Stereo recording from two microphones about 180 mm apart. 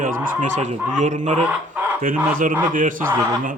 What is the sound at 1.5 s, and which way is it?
Speech, 10° right (ahead or behind).